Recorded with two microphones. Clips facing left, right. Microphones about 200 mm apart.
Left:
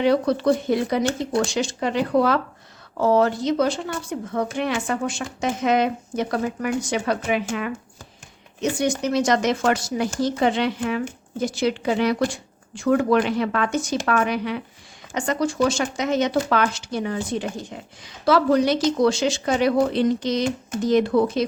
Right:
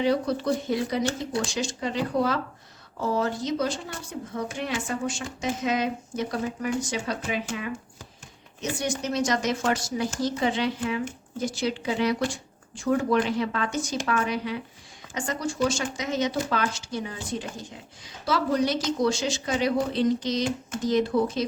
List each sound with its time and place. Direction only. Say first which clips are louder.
0.0 s speech: left 5 dB; 70° left (ahead or behind)
9.1 s speech: left 4 dB; 65° left (ahead or behind)